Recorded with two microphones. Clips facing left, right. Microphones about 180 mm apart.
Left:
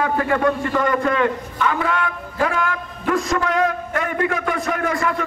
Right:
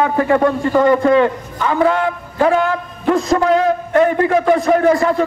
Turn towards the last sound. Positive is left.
turn(degrees=-30)  # may be behind; listen again after turning